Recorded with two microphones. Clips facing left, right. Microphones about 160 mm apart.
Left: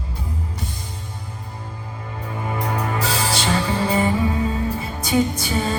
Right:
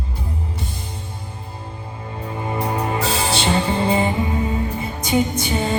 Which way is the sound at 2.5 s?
25° right (ahead or behind).